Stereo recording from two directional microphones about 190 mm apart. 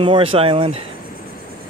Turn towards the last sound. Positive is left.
turn(degrees=-30)  # may be behind; listen again after turning